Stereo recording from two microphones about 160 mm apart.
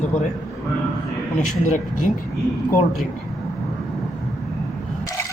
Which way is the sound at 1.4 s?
50° left (ahead or behind).